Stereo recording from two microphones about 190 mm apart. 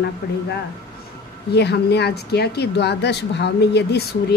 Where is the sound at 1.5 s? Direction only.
60° left (ahead or behind).